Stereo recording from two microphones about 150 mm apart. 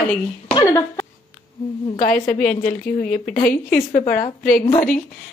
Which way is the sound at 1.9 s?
55° left (ahead or behind).